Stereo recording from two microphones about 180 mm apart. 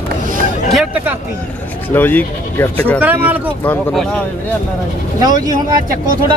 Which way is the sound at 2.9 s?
10° right (ahead or behind).